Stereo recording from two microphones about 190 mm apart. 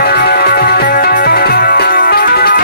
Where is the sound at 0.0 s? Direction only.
55° left (ahead or behind).